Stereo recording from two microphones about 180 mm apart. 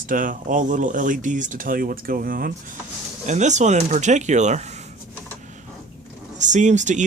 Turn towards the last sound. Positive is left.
turn(degrees=-40)  # may be behind; listen again after turning